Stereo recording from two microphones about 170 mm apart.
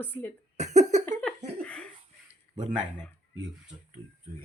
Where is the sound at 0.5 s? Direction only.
40° right (ahead or behind).